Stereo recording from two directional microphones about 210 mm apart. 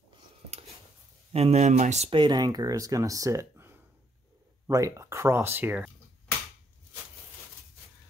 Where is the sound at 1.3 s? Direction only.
30° right (ahead or behind); by 5.9 s 10° right (ahead or behind).